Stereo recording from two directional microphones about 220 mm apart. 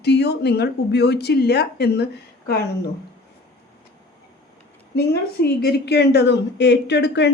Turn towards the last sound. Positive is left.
turn(degrees=50)  # may be behind; listen again after turning